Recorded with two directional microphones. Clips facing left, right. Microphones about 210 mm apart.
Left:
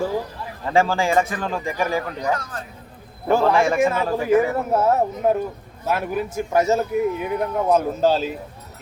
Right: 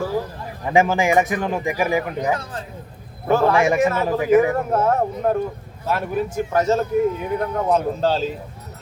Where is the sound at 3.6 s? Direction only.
15° right (ahead or behind).